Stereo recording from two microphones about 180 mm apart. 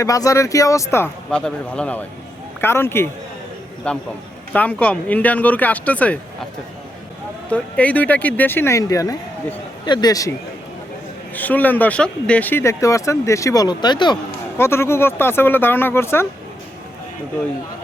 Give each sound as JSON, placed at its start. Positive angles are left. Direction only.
{"t": 0.0, "sound": "speech", "side_deg": 20}
{"t": 7.5, "sound": "speech", "side_deg": 10}
{"t": 11.3, "sound": "speech", "side_deg": 10}
{"t": 14.6, "sound": "speech", "side_deg": 15}